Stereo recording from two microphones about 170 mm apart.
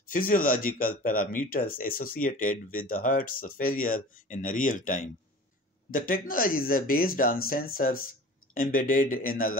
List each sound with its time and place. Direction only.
0.0 s speech: 55° left (ahead or behind)